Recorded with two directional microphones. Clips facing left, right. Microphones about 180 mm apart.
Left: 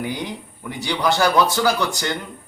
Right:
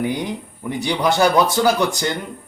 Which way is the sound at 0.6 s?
20° right (ahead or behind).